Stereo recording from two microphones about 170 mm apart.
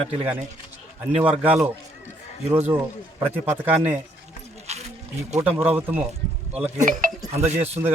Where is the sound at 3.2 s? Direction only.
10° right (ahead or behind).